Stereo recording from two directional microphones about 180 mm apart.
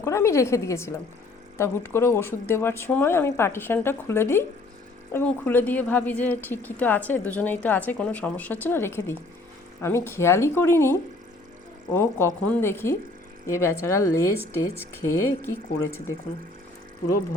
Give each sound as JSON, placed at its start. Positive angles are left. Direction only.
{"t": 0.0, "sound": "a woman's voice", "side_deg": 15}
{"t": 11.9, "sound": "a woman's voice", "side_deg": 10}